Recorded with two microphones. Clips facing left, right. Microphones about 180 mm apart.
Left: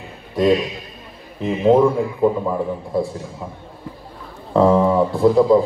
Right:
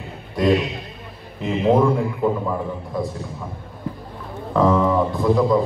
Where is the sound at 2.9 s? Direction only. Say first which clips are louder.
Left 5 dB; 30° left (ahead or behind).